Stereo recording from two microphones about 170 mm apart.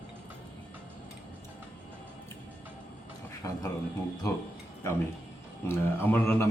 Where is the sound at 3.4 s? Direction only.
20° left (ahead or behind).